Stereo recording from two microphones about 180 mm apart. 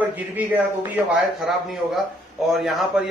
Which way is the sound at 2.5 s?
Centre (ahead or behind).